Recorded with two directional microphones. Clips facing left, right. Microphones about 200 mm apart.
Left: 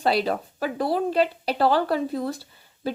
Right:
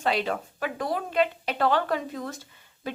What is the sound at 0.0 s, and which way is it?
A woman's voice, 35° left (ahead or behind).